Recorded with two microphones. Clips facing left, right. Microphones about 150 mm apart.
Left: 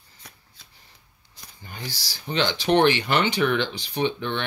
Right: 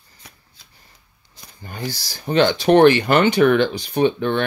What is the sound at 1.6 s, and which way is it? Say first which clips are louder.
Speech: right 8 dB; 45° right (ahead or behind).